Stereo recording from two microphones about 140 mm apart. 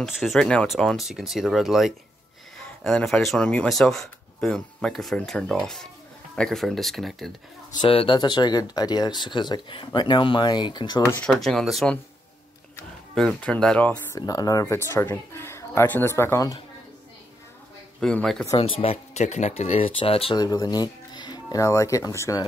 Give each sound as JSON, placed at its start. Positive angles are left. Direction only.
{"t": 0.0, "sound": "speech", "side_deg": 0}
{"t": 7.8, "sound": "speech", "side_deg": 40}
{"t": 11.1, "sound": "speech", "side_deg": 5}
{"t": 13.1, "sound": "speech", "side_deg": 5}
{"t": 14.1, "sound": "speech", "side_deg": 25}
{"t": 18.0, "sound": "speech", "side_deg": 5}
{"t": 18.6, "sound": "speech", "side_deg": 45}
{"t": 20.3, "sound": "speech", "side_deg": 25}